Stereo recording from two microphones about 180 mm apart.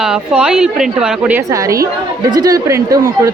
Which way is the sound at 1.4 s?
20° right (ahead or behind).